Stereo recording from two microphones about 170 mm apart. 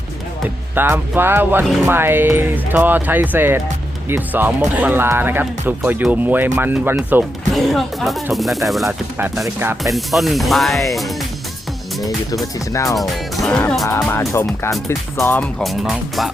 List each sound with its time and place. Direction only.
0.4 s speech: 10° right (ahead or behind)
7.5 s speech: centre (ahead or behind)
12.7 s speech: 20° left (ahead or behind)
13.0 s speech: centre (ahead or behind)
15.6 s speech: centre (ahead or behind)